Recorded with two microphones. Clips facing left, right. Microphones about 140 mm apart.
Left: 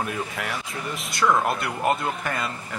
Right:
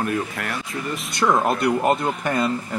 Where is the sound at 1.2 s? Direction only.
20° right (ahead or behind).